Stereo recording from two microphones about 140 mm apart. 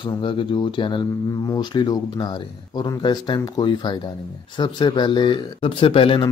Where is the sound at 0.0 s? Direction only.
35° left (ahead or behind).